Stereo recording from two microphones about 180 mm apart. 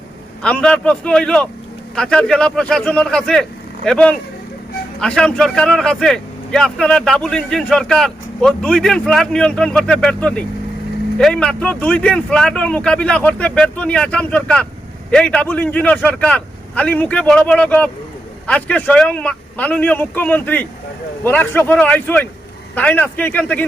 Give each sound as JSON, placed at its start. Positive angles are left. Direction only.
{"t": 0.4, "sound": "a man's voice", "side_deg": 5}